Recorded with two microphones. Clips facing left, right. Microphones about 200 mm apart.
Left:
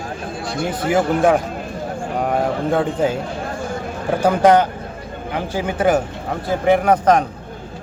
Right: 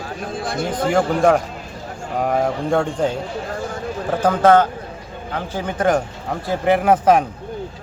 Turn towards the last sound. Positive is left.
turn(degrees=-5)  # may be behind; listen again after turning